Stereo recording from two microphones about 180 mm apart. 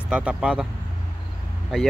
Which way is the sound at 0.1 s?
5° right (ahead or behind).